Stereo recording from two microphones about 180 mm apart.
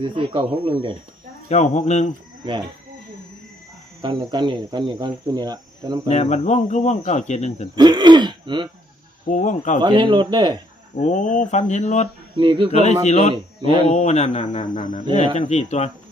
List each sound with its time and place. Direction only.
0.0 s speech: 25° right (ahead or behind)
1.5 s speech: 40° left (ahead or behind)
4.0 s speech: 25° right (ahead or behind)
6.1 s speech: 40° left (ahead or behind)
7.8 s speech: 25° right (ahead or behind)
9.2 s speech: 40° left (ahead or behind)
9.8 s speech: 25° right (ahead or behind)
11.0 s speech: 45° left (ahead or behind)
12.4 s speech: 25° right (ahead or behind)
12.7 s speech: 40° left (ahead or behind)